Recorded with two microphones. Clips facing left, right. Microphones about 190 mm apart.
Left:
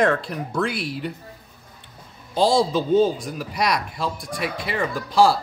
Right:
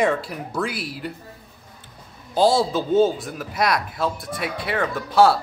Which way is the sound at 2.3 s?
5° right (ahead or behind).